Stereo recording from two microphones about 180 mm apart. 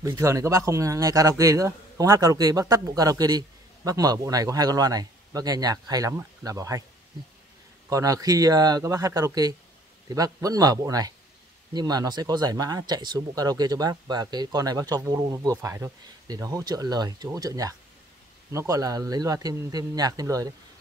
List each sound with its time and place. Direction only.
0.0 s speech: 15° right (ahead or behind)
7.9 s speech: 20° right (ahead or behind)